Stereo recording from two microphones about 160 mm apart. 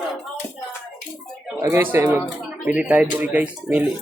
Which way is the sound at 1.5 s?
20° right (ahead or behind).